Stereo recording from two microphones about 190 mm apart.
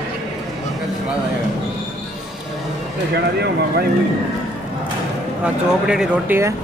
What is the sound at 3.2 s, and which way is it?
Speech, 60° right (ahead or behind).